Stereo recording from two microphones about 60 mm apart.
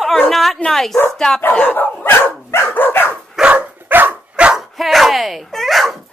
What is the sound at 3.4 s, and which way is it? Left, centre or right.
Dog, right.